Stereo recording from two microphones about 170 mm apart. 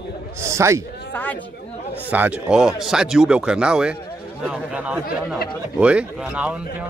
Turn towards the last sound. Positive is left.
turn(degrees=-5)  # may be behind; listen again after turning